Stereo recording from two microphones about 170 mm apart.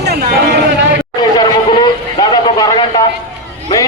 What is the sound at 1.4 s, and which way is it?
Vehicle, 25° left (ahead or behind).